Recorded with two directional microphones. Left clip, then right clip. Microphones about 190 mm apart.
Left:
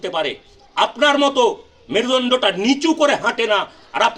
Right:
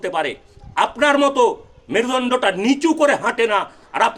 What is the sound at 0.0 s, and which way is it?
A man's voice, 10° right (ahead or behind).